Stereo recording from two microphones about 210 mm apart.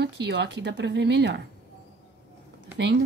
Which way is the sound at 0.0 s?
55° right (ahead or behind).